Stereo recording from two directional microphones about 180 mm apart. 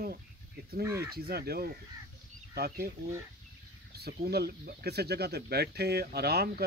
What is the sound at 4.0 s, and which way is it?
Speech, 60° right (ahead or behind).